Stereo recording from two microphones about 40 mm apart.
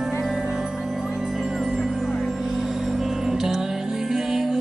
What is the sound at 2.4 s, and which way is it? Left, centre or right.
Music, centre.